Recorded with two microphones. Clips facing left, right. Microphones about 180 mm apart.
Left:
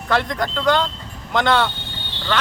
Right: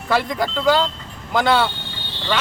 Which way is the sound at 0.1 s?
5° right (ahead or behind).